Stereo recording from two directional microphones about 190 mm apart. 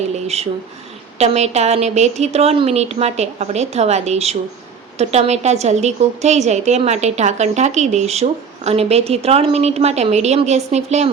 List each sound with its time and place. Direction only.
0.3 s a woman's voice: 35° right (ahead or behind)